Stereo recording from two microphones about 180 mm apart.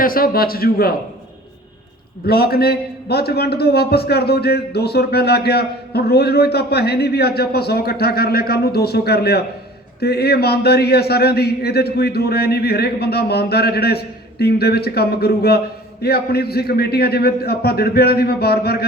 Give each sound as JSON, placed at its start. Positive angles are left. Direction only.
{"t": 0.0, "sound": "a man's voice", "side_deg": 55}
{"t": 2.2, "sound": "a man's voice", "side_deg": 60}